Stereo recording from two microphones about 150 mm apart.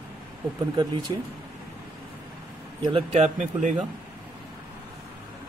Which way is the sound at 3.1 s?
50° right (ahead or behind).